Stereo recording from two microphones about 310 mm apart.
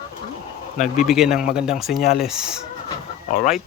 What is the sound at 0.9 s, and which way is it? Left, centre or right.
Speech, centre.